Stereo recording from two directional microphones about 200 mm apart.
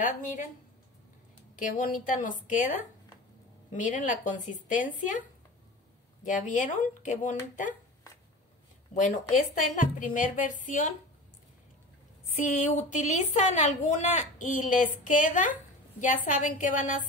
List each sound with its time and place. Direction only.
1.6 s a woman's voice: 40° left (ahead or behind)
3.7 s a woman's voice: 40° left (ahead or behind)
6.2 s a woman's voice: 40° left (ahead or behind)
7.6 s a sound: 15° left (ahead or behind)
8.9 s a woman's voice: 40° left (ahead or behind)
12.4 s a woman's voice: 35° left (ahead or behind)